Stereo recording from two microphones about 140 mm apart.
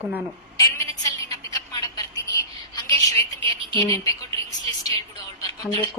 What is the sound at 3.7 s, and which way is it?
Speech, 25° left (ahead or behind).